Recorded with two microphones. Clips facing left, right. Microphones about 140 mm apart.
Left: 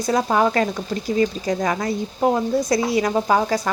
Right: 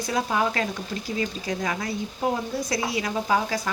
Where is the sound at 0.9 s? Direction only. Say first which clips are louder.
Left 6 dB; 55° left (ahead or behind).